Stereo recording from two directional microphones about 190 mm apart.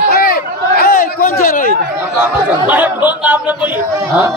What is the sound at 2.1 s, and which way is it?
A man's voice, 10° right (ahead or behind).